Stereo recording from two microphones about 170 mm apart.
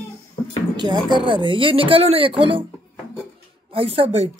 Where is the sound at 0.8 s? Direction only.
25° right (ahead or behind).